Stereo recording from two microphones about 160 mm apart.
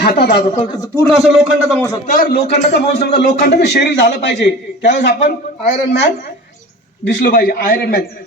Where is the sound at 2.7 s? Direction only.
90° left.